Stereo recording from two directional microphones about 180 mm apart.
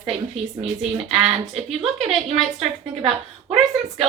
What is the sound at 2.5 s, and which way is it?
A woman's voice, 35° right (ahead or behind).